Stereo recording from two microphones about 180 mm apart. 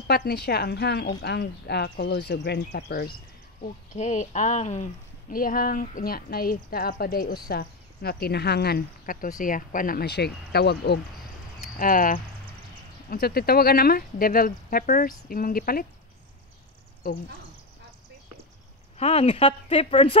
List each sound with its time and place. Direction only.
0.1 s speech: 65° left (ahead or behind)
3.6 s speech: 45° left (ahead or behind)
5.3 s speech: 50° left (ahead or behind); by 11.0 s 65° left (ahead or behind)
11.8 s speech: 50° left (ahead or behind)
17.0 s speech: 55° left (ahead or behind)
18.9 s speech: 35° left (ahead or behind)